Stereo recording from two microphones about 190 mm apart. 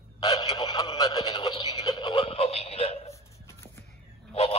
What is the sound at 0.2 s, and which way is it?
Speech, 20° left (ahead or behind).